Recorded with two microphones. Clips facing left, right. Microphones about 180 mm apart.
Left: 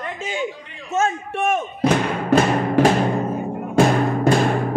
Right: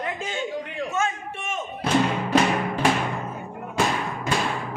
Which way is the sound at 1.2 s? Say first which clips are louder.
Left 10 dB; 60° left (ahead or behind).